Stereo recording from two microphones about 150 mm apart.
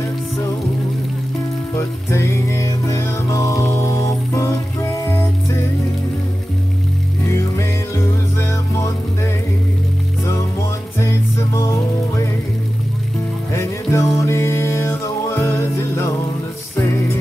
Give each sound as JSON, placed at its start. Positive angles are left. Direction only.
{"t": 1.8, "sound": "music", "side_deg": 20}
{"t": 7.2, "sound": "music", "side_deg": 20}
{"t": 11.0, "sound": "music", "side_deg": 20}
{"t": 13.5, "sound": "music", "side_deg": 20}